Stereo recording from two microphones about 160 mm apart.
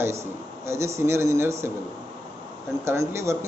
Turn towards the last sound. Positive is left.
turn(degrees=-15)  # may be behind; listen again after turning